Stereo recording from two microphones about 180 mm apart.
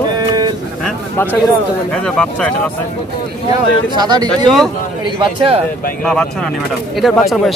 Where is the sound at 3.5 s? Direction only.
25° right (ahead or behind).